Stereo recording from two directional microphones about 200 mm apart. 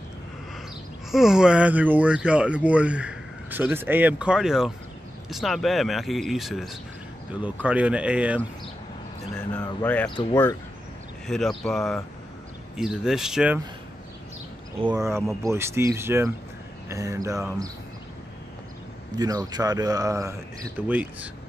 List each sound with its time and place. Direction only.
1.1 s speech: centre (ahead or behind)
9.8 s speech: 5° left (ahead or behind)
11.2 s speech: centre (ahead or behind)
14.8 s a man's voice: 20° right (ahead or behind)
19.1 s a man's voice: 20° right (ahead or behind)